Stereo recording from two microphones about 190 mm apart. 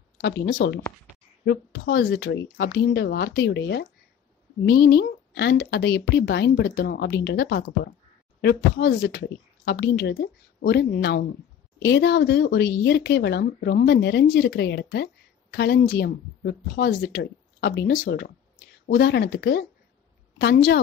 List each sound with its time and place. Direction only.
0.2 s speech: 60° left (ahead or behind)